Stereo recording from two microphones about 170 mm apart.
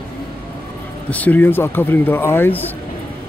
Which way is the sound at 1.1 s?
10° left (ahead or behind).